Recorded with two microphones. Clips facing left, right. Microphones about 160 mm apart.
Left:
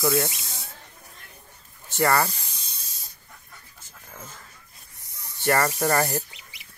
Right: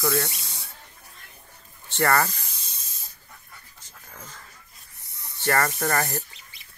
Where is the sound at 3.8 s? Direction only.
10° left (ahead or behind).